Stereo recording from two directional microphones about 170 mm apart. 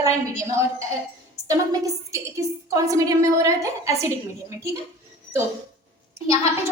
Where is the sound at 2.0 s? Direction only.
20° right (ahead or behind).